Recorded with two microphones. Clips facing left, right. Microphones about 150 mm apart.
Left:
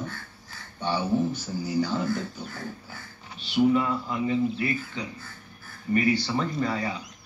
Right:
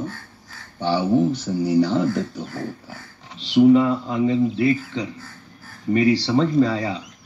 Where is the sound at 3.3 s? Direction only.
90° right.